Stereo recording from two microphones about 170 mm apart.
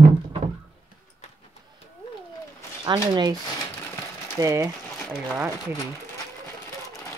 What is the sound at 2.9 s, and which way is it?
Speech, 25° right (ahead or behind).